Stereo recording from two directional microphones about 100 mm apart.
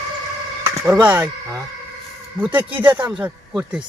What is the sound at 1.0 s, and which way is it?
Speech, 25° right (ahead or behind).